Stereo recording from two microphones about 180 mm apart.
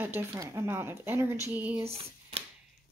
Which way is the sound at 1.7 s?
35° right (ahead or behind).